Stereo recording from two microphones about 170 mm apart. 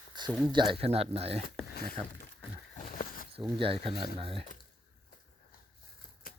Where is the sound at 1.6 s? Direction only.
65° left (ahead or behind).